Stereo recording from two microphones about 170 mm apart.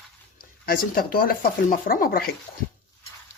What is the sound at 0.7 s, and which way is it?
Speech, 60° left (ahead or behind).